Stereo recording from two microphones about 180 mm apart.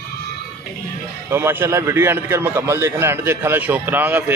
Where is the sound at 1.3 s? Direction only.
15° right (ahead or behind).